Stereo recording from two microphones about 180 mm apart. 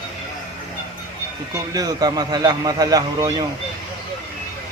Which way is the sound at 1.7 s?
20° right (ahead or behind).